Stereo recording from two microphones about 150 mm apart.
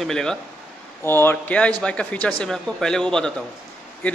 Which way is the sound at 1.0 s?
15° left (ahead or behind).